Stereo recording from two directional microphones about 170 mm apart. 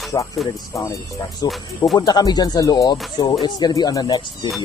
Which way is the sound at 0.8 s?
20° left (ahead or behind).